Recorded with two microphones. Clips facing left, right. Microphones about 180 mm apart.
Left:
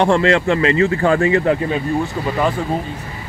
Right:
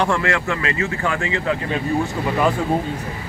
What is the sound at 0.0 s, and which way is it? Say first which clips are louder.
Speech: left 6 dB; 25° left (ahead or behind).